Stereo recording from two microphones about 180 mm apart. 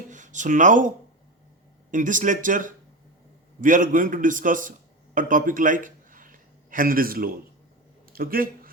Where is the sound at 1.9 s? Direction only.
45° right (ahead or behind).